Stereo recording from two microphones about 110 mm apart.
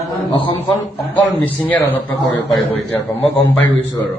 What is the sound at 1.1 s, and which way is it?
A man's voice, 15° left (ahead or behind).